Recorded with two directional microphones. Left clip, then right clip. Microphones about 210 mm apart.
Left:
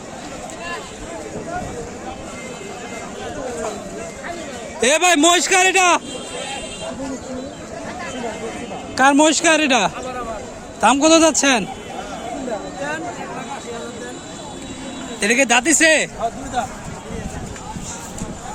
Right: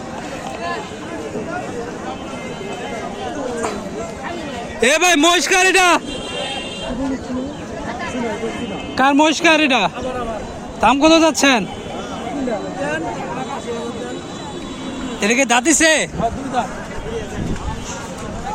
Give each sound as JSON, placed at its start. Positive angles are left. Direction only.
{"t": 4.8, "sound": "a man's voice", "side_deg": 10}
{"t": 9.0, "sound": "a man's voice", "side_deg": 20}
{"t": 15.2, "sound": "a man's voice", "side_deg": 15}